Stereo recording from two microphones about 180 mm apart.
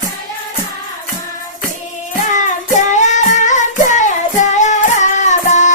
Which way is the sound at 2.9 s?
40° left (ahead or behind).